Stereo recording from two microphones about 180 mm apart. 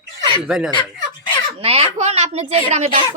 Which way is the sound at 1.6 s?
35° right (ahead or behind).